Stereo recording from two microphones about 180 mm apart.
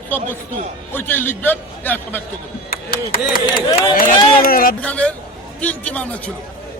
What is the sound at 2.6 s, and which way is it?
Speech, 55° left (ahead or behind).